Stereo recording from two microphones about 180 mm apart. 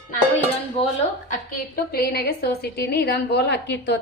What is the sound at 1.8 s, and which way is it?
A woman's voice, 55° left (ahead or behind).